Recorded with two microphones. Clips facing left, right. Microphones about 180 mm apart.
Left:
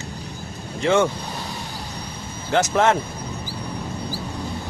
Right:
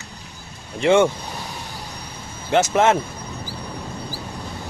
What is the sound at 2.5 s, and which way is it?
Speech, 15° right (ahead or behind).